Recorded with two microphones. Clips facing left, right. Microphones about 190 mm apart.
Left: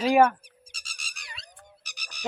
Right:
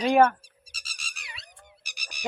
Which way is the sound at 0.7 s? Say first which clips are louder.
Right 2 dB; centre (ahead or behind).